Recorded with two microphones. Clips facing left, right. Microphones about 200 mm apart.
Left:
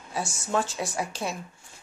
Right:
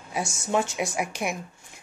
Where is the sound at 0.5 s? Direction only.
15° right (ahead or behind).